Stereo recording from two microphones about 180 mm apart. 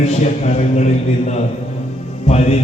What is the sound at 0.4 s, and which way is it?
A man's voice, 40° left (ahead or behind).